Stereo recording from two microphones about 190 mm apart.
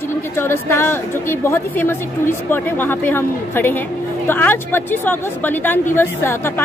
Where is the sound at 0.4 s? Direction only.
15° left (ahead or behind).